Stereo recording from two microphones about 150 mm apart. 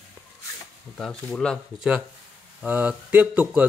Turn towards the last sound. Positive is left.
turn(degrees=-10)  # may be behind; listen again after turning